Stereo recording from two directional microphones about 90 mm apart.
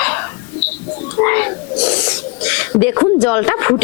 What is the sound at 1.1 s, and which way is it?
Speech, 20° left (ahead or behind).